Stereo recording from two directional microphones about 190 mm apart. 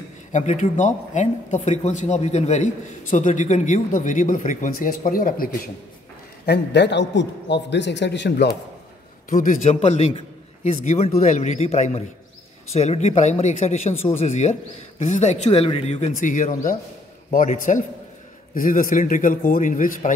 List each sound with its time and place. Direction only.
0.3 s speech: 40° left (ahead or behind)
6.4 s a man's voice: 60° left (ahead or behind)
9.3 s a man's voice: 40° left (ahead or behind)